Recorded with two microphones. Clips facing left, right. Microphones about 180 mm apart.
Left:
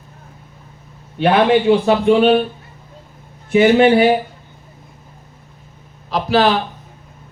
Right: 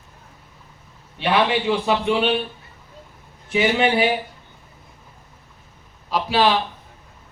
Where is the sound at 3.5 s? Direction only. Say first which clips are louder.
Left 8 dB; 50° left (ahead or behind).